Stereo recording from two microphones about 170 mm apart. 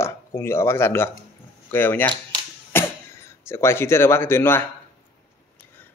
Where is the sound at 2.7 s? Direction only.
15° left (ahead or behind).